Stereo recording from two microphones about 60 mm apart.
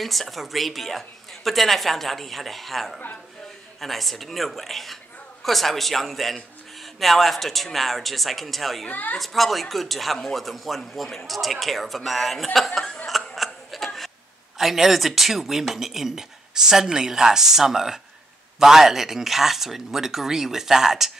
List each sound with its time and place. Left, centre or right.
0.0 s speech: centre
8.8 s a woman's voice: left
9.2 s speech: centre
12.5 s a sound: centre
14.6 s speech: centre